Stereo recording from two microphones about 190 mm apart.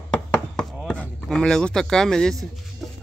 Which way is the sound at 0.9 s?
5° left (ahead or behind).